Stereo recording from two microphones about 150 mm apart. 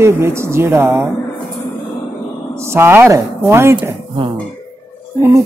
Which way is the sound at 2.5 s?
15° right (ahead or behind).